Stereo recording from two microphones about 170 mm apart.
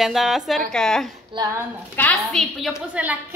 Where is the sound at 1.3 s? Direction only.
25° right (ahead or behind).